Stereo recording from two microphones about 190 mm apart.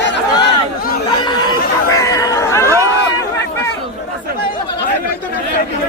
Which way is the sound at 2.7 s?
15° right (ahead or behind).